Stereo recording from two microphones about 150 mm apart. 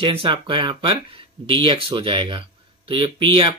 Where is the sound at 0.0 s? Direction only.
35° right (ahead or behind).